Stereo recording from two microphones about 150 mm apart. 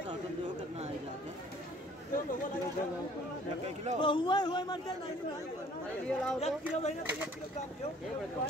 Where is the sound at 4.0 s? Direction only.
30° left (ahead or behind).